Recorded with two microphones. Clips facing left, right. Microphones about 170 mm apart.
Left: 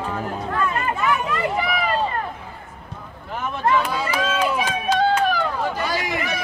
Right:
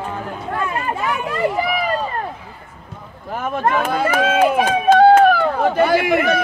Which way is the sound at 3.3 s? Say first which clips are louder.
Right 2 dB; 50° right (ahead or behind).